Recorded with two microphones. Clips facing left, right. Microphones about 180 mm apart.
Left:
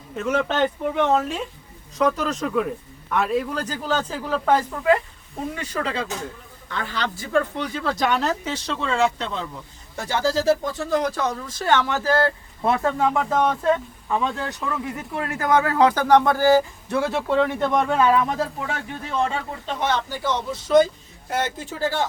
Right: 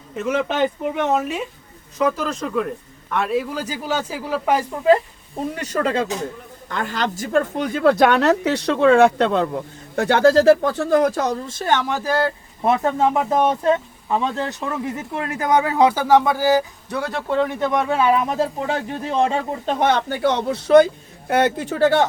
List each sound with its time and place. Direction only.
0.2 s a man's voice: 5° right (ahead or behind)
4.8 s speech: 30° right (ahead or behind)
5.5 s speech: 45° right (ahead or behind); by 18.1 s 5° right (ahead or behind)
18.1 s speech: 20° right (ahead or behind)
18.6 s speech: 35° right (ahead or behind)
19.8 s speech: 60° right (ahead or behind)